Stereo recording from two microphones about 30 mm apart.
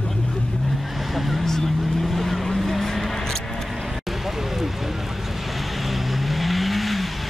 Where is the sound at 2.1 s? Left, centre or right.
Centre.